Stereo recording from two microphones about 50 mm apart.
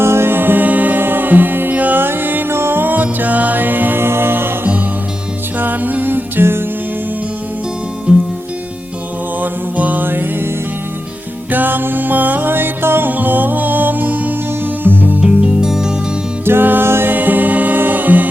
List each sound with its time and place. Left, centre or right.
0.0 s music: right
4.0 s music: right
8.1 s music: centre
9.4 s music: right
11.5 s music: right
13.1 s music: right
15.2 s music: centre
16.5 s music: right
17.1 s music: right